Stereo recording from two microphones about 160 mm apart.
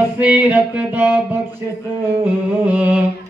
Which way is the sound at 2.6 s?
10° right (ahead or behind).